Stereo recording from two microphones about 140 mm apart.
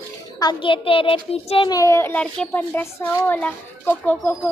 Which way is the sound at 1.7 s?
20° left (ahead or behind).